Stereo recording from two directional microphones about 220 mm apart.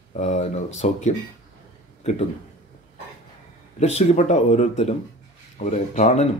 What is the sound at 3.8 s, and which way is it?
Speech, 30° left (ahead or behind).